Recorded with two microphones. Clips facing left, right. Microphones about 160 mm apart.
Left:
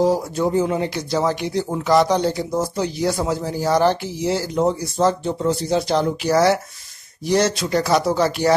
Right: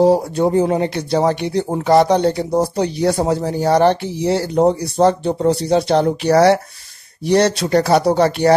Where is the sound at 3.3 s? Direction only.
65° right (ahead or behind).